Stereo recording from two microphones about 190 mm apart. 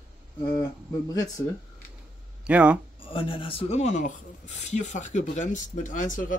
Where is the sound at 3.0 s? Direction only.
30° left (ahead or behind).